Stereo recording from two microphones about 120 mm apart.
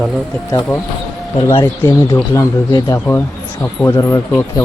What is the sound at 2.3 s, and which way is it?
Speech, 35° left (ahead or behind).